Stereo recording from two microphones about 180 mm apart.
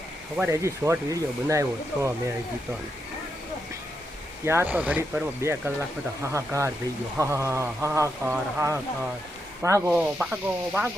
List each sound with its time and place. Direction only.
0.3 s speech: 15° right (ahead or behind)
4.4 s speech: 10° right (ahead or behind)